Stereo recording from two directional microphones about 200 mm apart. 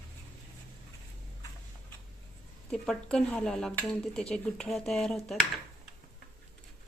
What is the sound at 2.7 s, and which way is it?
Speech, 5° left (ahead or behind).